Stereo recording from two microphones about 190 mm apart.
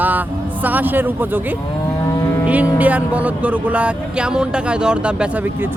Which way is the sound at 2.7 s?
10° right (ahead or behind).